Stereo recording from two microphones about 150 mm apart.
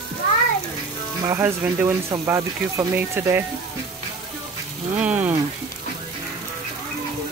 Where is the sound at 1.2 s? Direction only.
20° right (ahead or behind).